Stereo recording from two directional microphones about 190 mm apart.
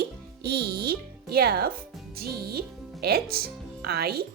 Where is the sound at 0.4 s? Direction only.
55° right (ahead or behind).